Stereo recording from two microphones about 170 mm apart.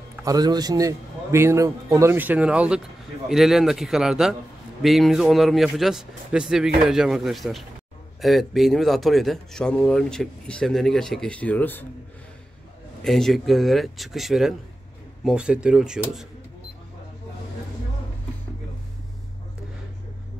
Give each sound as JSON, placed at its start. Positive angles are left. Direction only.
{"t": 0.2, "sound": "a man's voice", "side_deg": -20}
{"t": 13.0, "sound": "speech", "side_deg": 0}